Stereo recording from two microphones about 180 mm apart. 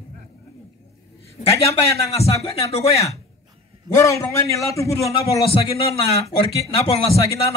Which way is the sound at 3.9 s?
15° left (ahead or behind).